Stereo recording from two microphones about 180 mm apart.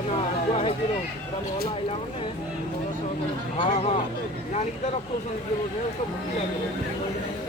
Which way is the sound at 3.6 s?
30° left (ahead or behind).